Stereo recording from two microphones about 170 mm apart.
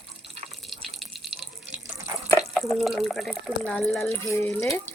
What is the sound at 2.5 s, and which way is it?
Speech, centre (ahead or behind).